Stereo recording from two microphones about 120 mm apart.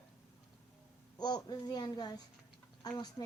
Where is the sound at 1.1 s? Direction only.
35° left (ahead or behind).